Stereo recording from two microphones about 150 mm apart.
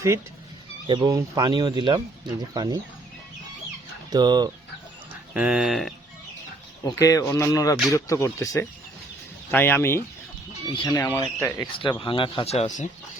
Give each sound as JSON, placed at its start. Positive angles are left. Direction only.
{"t": 0.9, "sound": "speech", "side_deg": -20}
{"t": 4.1, "sound": "speech", "side_deg": -30}
{"t": 5.3, "sound": "speech", "side_deg": -5}
{"t": 7.0, "sound": "speech", "side_deg": 20}
{"t": 10.7, "sound": "speech", "side_deg": 30}
{"t": 10.9, "sound": "speech", "side_deg": 20}
{"t": 11.6, "sound": "speech", "side_deg": 30}